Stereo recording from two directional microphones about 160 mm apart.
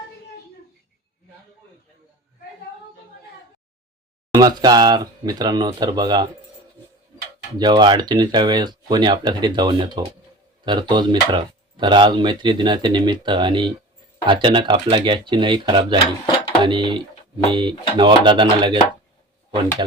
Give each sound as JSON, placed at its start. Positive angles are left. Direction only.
{"t": 4.4, "sound": "speech", "side_deg": -25}
{"t": 7.6, "sound": "speech", "side_deg": -30}